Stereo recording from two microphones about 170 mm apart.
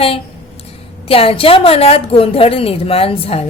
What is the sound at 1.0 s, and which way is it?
A woman's voice, 35° left (ahead or behind).